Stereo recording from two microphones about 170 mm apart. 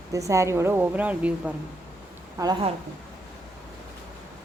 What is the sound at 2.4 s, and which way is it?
Speech, 20° right (ahead or behind).